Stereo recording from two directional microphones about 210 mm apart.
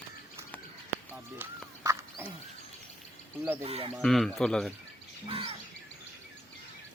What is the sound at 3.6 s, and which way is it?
Speech, 30° right (ahead or behind).